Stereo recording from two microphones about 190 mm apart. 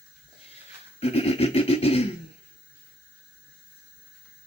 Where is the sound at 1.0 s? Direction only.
30° left (ahead or behind).